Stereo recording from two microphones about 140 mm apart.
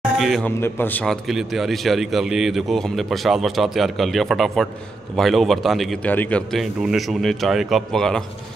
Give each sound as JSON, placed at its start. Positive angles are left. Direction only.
{"t": 0.2, "sound": "a man's voice", "side_deg": 0}
{"t": 0.5, "sound": "a man's voice", "side_deg": 15}
{"t": 1.0, "sound": "speech", "side_deg": 0}
{"t": 6.0, "sound": "speech", "side_deg": 10}